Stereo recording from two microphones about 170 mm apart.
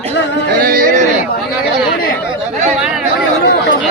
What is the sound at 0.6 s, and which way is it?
Speech, 55° right (ahead or behind).